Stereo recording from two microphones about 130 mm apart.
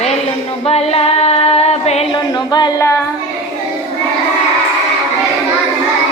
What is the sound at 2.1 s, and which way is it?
Music, 35° left (ahead or behind).